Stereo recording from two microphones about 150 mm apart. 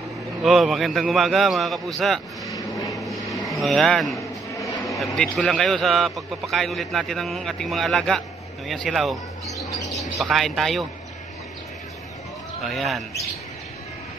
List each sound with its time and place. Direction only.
0.4 s a man's voice: centre (ahead or behind)
4.6 s a sound: 20° left (ahead or behind)
4.9 s a man's voice: centre (ahead or behind)
12.6 s a man's voice: centre (ahead or behind)